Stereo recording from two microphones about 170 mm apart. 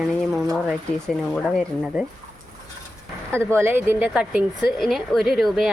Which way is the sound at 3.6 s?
15° right (ahead or behind).